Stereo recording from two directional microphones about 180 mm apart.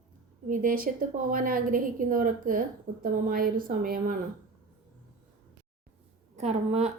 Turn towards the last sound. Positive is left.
turn(degrees=-40)  # may be behind; listen again after turning